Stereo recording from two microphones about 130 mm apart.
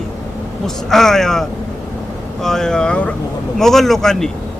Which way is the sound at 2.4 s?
5° left (ahead or behind).